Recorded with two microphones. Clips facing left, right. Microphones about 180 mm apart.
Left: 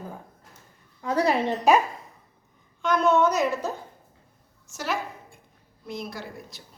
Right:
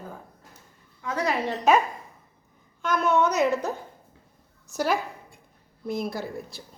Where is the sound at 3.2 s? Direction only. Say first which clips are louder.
Even; 20° right (ahead or behind).